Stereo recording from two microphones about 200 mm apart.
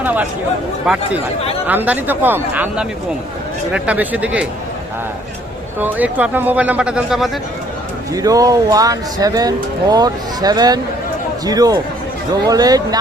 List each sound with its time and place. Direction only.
0.0 s speech: 10° right (ahead or behind)
1.6 s speech: 10° right (ahead or behind)
5.8 s speech: 10° right (ahead or behind)
8.1 s speech: 15° right (ahead or behind)